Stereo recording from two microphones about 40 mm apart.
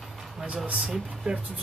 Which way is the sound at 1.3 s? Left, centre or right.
Right.